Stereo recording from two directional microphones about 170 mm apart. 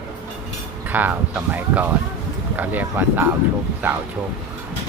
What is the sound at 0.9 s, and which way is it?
Speech, 10° right (ahead or behind).